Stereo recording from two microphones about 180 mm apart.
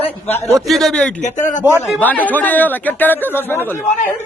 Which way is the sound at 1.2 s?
45° left (ahead or behind).